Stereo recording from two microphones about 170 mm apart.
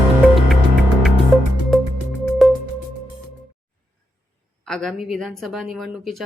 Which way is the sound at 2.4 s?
Centre (ahead or behind).